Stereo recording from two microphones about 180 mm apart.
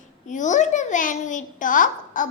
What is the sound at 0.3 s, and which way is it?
A child's voice, 45° left (ahead or behind).